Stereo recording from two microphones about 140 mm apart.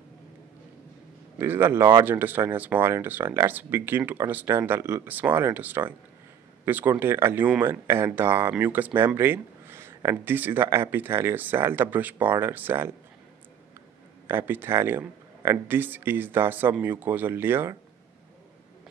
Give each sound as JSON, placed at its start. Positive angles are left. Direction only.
{"t": 1.4, "sound": "speech", "side_deg": -15}
{"t": 14.2, "sound": "speech", "side_deg": -15}